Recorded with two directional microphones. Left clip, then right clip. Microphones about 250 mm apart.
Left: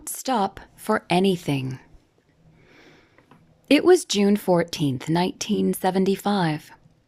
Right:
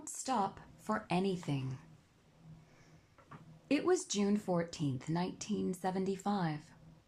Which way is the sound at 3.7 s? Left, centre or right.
Left.